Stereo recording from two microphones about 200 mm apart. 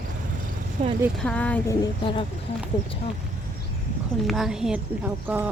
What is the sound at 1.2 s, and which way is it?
Speech, 5° left (ahead or behind).